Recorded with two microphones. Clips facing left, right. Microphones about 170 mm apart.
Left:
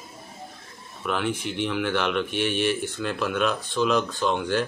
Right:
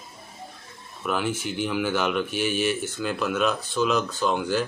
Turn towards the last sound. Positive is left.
turn(degrees=0)  # may be behind; listen again after turning